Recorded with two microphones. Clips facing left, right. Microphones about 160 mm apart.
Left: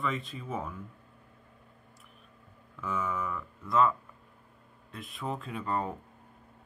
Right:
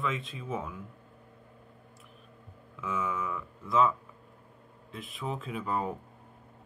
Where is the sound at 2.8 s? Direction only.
Centre (ahead or behind).